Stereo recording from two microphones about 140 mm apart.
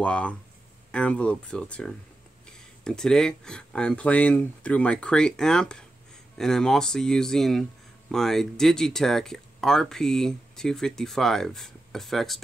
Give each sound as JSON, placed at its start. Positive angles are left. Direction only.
{"t": 0.0, "sound": "speech", "side_deg": 10}